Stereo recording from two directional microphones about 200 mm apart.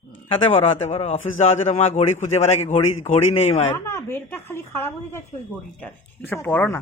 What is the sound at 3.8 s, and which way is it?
A woman's voice, 15° left (ahead or behind).